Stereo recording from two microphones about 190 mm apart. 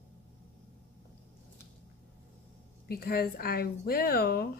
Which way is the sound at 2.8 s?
55° left (ahead or behind).